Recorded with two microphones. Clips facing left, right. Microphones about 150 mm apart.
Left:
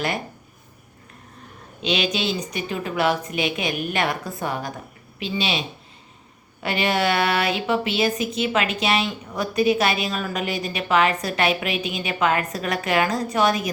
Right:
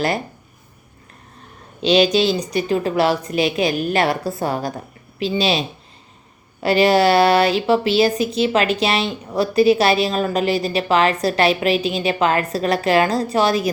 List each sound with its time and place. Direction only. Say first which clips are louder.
1.8 s speech: right 9 dB; 35° right (ahead or behind)